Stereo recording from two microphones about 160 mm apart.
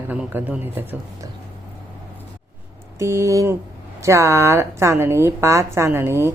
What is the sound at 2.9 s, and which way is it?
A woman's voice, 15° right (ahead or behind).